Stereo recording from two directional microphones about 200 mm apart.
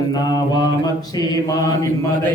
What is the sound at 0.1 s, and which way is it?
Mantra, 20° left (ahead or behind).